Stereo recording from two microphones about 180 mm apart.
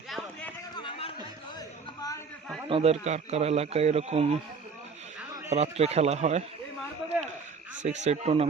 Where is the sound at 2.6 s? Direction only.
30° right (ahead or behind).